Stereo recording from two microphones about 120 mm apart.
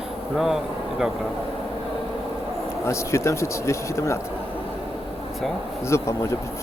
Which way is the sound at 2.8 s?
25° left (ahead or behind).